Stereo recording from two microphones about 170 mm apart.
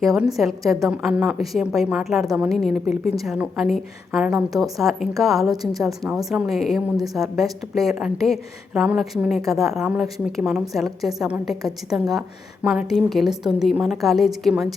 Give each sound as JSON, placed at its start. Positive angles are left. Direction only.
{"t": 0.0, "sound": "a woman's voice", "side_deg": 0}